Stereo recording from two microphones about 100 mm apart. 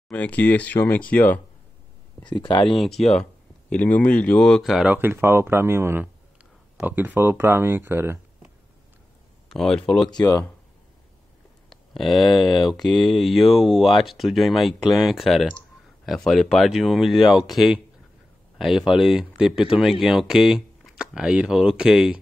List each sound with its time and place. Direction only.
0.1 s speech: 15° left (ahead or behind)
2.2 s speech: 50° left (ahead or behind)
2.7 s speech: 5° left (ahead or behind)
4.8 s speech: 20° right (ahead or behind)
9.5 s speech: 5° left (ahead or behind)
11.7 s speech: centre (ahead or behind)